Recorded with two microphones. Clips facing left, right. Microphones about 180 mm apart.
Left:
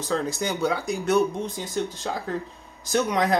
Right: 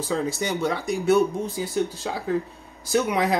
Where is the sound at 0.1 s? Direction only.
Centre (ahead or behind).